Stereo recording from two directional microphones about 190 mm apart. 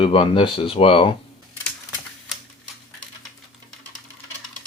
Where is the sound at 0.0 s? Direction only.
30° left (ahead or behind).